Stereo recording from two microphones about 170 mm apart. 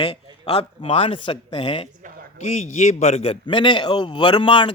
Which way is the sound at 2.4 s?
45° left (ahead or behind).